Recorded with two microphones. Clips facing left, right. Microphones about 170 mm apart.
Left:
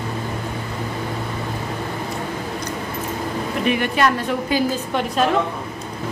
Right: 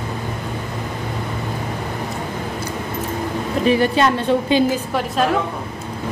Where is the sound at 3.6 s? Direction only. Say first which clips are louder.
Right 4 dB; 30° right (ahead or behind).